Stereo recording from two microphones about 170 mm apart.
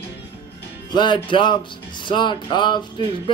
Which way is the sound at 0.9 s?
25° left (ahead or behind).